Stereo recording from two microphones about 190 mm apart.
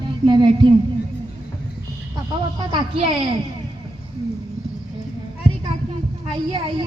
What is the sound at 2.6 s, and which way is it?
Speech, 25° right (ahead or behind).